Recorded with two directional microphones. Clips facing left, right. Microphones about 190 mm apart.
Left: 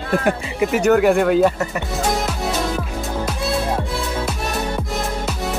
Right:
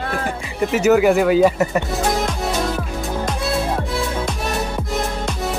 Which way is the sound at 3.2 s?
5° left (ahead or behind).